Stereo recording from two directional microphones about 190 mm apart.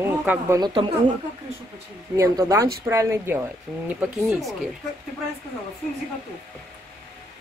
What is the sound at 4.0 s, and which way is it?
Speech, centre (ahead or behind).